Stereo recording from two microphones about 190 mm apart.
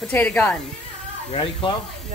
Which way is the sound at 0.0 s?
5° left (ahead or behind).